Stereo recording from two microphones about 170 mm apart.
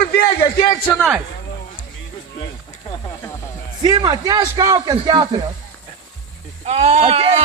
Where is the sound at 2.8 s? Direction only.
15° left (ahead or behind).